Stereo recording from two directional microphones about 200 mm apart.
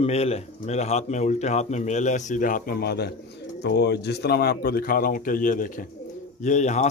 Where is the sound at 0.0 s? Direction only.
30° left (ahead or behind).